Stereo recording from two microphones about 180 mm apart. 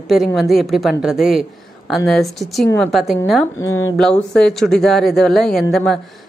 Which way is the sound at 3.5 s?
15° left (ahead or behind).